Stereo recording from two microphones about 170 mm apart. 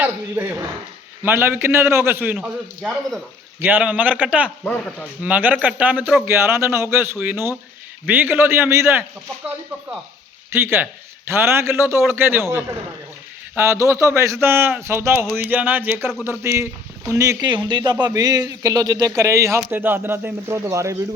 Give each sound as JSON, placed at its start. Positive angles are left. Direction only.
{"t": 0.0, "sound": "a man's voice", "side_deg": -10}
{"t": 3.6, "sound": "a man's voice", "side_deg": -10}
{"t": 4.6, "sound": "a man's voice", "side_deg": 5}
{"t": 5.2, "sound": "a man's voice", "side_deg": -10}
{"t": 10.5, "sound": "a man's voice", "side_deg": -15}